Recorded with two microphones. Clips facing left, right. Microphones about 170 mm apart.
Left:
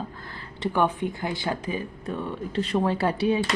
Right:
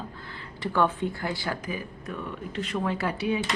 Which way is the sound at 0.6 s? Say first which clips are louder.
Left 1 dB; 15° left (ahead or behind).